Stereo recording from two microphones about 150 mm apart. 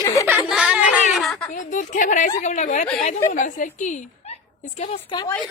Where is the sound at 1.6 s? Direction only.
55° left (ahead or behind).